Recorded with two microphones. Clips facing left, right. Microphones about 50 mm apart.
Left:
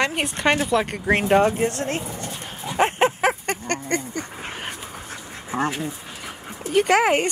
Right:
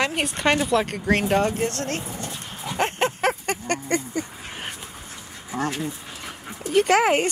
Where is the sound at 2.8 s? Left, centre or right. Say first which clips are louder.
Left 4 dB; centre.